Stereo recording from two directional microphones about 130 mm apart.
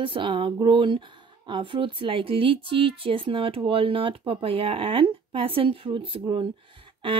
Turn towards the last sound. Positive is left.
turn(degrees=-40)  # may be behind; listen again after turning